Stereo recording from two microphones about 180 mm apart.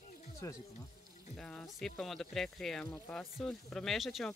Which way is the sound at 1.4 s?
5° left (ahead or behind).